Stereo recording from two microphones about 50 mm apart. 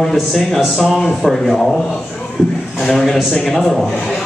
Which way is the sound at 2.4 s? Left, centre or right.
Left.